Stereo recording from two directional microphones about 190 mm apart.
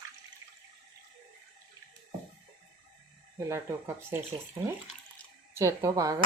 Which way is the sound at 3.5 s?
15° right (ahead or behind).